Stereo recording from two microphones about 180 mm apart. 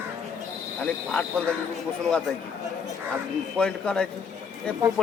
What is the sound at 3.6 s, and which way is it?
Speech, 5° left (ahead or behind).